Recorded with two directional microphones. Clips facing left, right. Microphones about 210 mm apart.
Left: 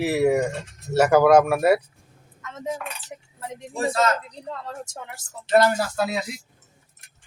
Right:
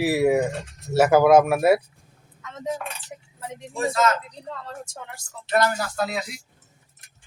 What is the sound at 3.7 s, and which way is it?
Speech, 30° left (ahead or behind).